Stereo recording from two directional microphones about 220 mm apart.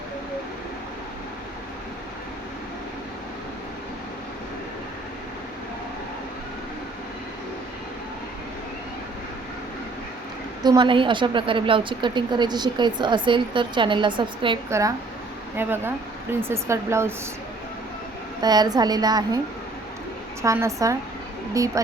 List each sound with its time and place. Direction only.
10.6 s a woman's voice: 20° right (ahead or behind)
18.4 s a woman's voice: 20° right (ahead or behind)
20.4 s a woman's voice: 15° right (ahead or behind)